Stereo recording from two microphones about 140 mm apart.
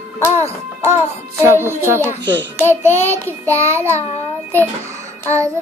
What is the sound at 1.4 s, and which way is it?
Music, 20° right (ahead or behind).